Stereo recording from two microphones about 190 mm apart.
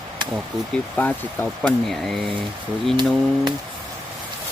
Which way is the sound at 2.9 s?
25° right (ahead or behind).